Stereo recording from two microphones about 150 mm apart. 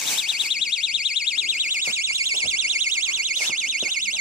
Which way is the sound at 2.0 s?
20° right (ahead or behind).